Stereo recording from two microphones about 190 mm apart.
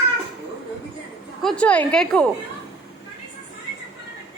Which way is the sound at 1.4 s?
5° left (ahead or behind).